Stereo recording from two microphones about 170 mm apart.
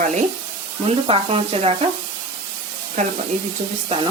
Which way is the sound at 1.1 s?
35° right (ahead or behind).